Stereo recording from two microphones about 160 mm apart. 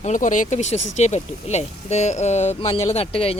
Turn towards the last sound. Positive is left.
turn(degrees=40)  # may be behind; listen again after turning